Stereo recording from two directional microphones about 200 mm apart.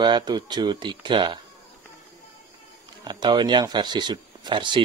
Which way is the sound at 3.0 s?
20° right (ahead or behind).